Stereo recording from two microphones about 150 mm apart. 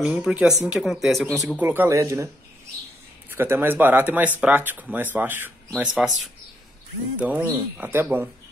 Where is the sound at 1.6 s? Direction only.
15° right (ahead or behind).